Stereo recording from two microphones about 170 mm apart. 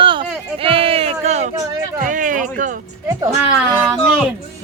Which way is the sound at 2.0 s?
50° right (ahead or behind).